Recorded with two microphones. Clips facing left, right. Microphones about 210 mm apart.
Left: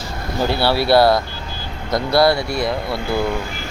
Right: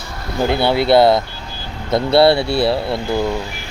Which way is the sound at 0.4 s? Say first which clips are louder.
Right 3 dB; 20° right (ahead or behind).